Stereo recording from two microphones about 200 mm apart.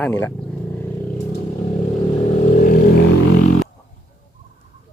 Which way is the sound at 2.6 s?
45° left (ahead or behind).